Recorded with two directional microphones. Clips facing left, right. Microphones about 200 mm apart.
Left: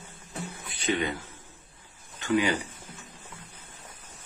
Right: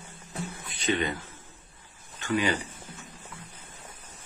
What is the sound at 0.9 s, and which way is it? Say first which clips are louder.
Speech: even; 5° left (ahead or behind).